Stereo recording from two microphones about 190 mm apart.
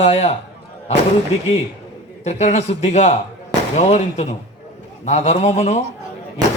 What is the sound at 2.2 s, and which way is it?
Speech, 35° left (ahead or behind).